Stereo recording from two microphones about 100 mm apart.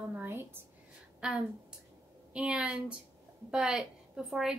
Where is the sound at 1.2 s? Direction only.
10° right (ahead or behind).